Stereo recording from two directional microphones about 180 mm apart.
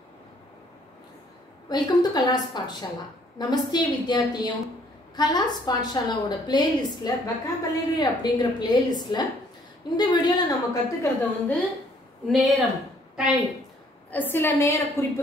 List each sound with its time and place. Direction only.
1.7 s a woman's voice: 20° left (ahead or behind)
12.3 s speech: centre (ahead or behind)
13.1 s a sound: 5° right (ahead or behind)
14.1 s a woman's voice: 10° left (ahead or behind)